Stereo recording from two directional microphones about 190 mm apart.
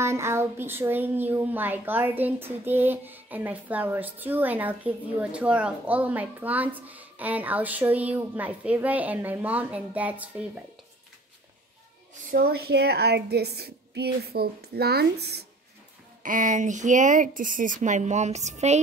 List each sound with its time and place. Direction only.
0.0 s speech: 15° right (ahead or behind)
12.3 s a woman's voice: 50° right (ahead or behind)
16.2 s speech: 45° right (ahead or behind)